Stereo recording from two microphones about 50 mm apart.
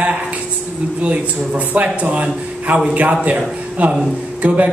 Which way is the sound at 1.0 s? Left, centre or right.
Right.